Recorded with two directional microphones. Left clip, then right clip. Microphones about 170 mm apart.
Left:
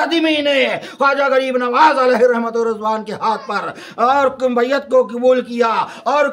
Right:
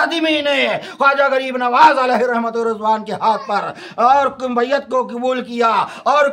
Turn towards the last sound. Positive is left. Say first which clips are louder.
# right 2 dB
turn(degrees=-30)  # may be behind; listen again after turning